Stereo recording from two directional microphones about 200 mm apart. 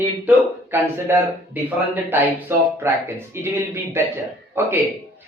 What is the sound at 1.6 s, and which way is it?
Speech, 10° right (ahead or behind).